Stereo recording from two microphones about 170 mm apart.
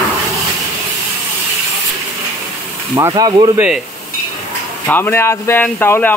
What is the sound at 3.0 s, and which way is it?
Speech, 25° right (ahead or behind).